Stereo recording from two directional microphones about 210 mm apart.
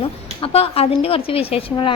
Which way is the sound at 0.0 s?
25° left (ahead or behind).